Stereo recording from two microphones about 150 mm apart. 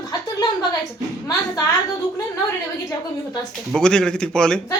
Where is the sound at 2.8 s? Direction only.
25° left (ahead or behind).